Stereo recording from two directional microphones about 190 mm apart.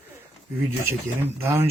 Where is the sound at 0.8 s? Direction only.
15° right (ahead or behind).